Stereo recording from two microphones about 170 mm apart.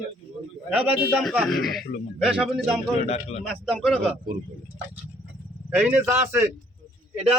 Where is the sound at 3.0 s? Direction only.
40° left (ahead or behind).